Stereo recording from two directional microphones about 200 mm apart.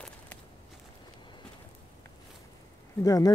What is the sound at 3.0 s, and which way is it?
Speech, 15° left (ahead or behind).